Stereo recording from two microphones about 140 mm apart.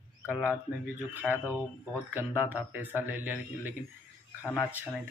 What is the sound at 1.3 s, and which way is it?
Speech, 15° left (ahead or behind).